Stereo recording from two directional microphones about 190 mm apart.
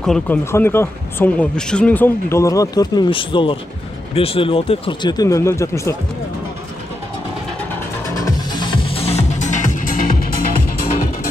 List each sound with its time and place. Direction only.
0.0 s speech: centre (ahead or behind)
8.1 s music: 20° left (ahead or behind); by 10.3 s 45° left (ahead or behind)